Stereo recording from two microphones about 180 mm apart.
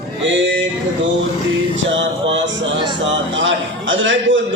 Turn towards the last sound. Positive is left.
turn(degrees=-90)